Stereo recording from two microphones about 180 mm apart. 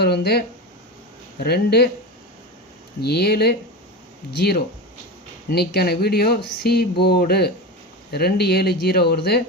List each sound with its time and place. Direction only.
0.0 s speech: 60° left (ahead or behind)
3.0 s speech: 60° left (ahead or behind)